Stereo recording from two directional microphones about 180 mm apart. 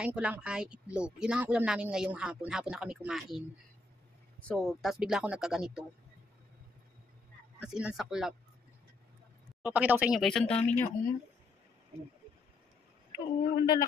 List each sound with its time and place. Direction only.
0.0 s speech: 5° right (ahead or behind)
4.5 s speech: centre (ahead or behind)
7.6 s speech: 5° right (ahead or behind)
9.6 s speech: 10° right (ahead or behind)
10.5 s speech: 35° left (ahead or behind)
13.4 s speech: 20° left (ahead or behind)